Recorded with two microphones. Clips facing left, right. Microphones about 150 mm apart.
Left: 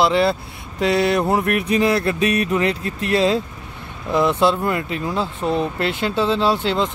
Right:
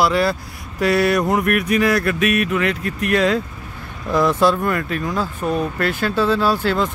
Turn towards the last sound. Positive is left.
turn(degrees=20)  # may be behind; listen again after turning